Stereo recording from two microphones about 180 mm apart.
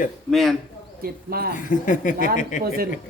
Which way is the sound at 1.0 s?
55° right (ahead or behind).